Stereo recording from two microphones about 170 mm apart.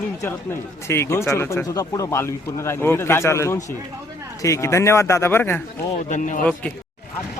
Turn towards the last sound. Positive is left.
turn(degrees=5)  # may be behind; listen again after turning